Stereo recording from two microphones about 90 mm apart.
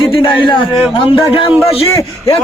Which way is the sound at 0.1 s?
70° left (ahead or behind).